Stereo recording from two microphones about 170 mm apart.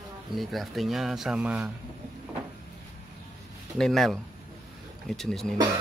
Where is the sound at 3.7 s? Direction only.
Centre (ahead or behind).